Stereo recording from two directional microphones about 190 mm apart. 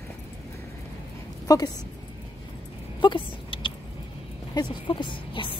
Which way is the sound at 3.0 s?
25° left (ahead or behind).